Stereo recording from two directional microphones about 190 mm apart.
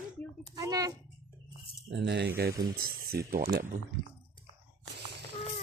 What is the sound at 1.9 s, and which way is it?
Speech, 65° right (ahead or behind).